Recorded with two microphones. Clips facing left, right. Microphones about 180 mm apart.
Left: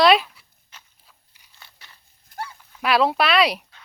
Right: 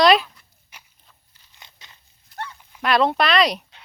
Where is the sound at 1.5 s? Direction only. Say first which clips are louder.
Right 1 dB; 20° right (ahead or behind).